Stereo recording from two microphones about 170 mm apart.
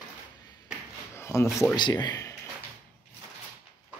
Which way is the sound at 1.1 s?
15° left (ahead or behind).